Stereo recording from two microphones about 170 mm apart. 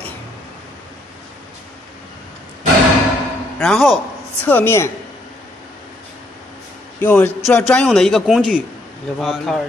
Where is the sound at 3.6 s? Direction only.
Centre (ahead or behind).